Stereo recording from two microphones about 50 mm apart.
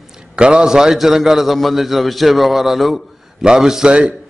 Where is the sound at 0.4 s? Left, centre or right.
Centre.